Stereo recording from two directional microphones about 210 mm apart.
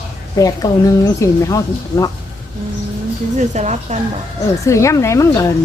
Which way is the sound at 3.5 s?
35° right (ahead or behind).